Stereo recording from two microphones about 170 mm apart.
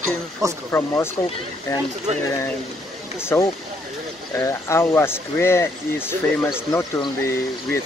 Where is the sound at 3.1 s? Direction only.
15° left (ahead or behind).